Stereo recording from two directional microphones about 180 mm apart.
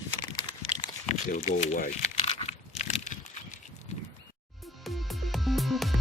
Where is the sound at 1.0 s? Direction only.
35° left (ahead or behind).